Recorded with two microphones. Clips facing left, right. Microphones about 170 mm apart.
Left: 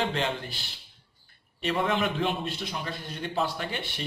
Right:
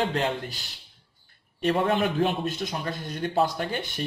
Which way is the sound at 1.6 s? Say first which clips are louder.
Right 4 dB; 40° right (ahead or behind).